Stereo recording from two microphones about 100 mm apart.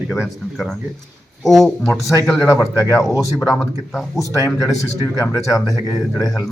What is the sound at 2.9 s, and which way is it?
Speech, 30° left (ahead or behind).